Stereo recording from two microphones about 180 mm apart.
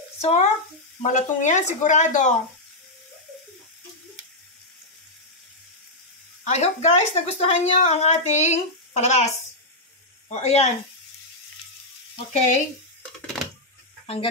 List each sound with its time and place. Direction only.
0.2 s speech: 35° left (ahead or behind)
6.4 s speech: 40° left (ahead or behind)
10.3 s speech: 40° left (ahead or behind)
12.3 s speech: 40° left (ahead or behind)